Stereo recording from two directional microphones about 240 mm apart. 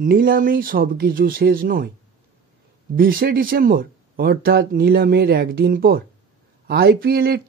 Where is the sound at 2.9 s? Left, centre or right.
Right.